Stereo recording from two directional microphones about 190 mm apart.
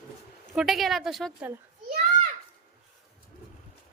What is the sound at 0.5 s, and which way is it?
Speech, centre (ahead or behind).